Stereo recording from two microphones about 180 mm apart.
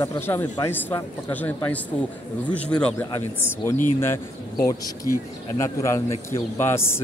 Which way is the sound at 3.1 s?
15° left (ahead or behind).